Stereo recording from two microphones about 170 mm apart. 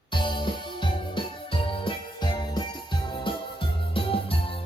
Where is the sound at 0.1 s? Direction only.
25° left (ahead or behind).